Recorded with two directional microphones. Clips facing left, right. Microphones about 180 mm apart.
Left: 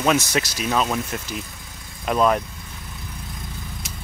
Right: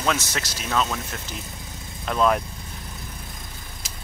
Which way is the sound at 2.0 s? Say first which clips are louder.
Left 2 dB; 10° left (ahead or behind).